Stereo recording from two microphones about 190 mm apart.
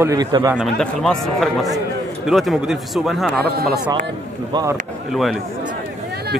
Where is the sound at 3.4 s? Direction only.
55° right (ahead or behind).